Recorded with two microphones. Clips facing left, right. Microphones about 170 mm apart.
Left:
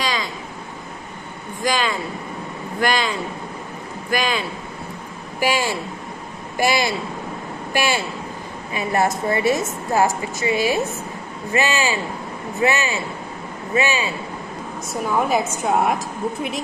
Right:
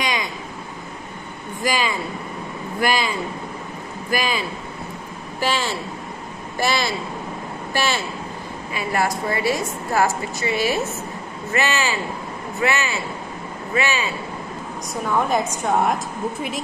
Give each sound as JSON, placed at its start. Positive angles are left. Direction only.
{"t": 0.0, "sound": "a sound", "side_deg": -20}
{"t": 1.6, "sound": "speech", "side_deg": -10}
{"t": 5.4, "sound": "a man's voice", "side_deg": 10}
{"t": 15.1, "sound": "a man's voice", "side_deg": 5}